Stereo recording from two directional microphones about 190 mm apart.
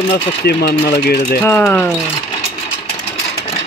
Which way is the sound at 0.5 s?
55° left (ahead or behind).